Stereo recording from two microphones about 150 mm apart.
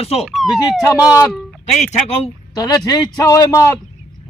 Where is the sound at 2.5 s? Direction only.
25° left (ahead or behind).